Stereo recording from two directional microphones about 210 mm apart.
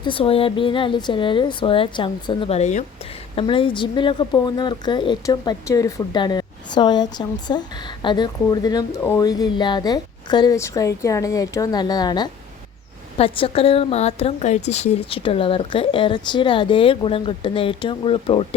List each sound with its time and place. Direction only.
0.0 s speech: 25° left (ahead or behind)